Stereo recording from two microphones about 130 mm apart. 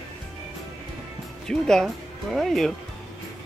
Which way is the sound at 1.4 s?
5° left (ahead or behind).